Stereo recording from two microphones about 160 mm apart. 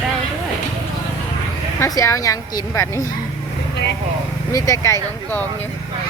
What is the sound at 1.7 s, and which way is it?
A woman's voice, 20° left (ahead or behind).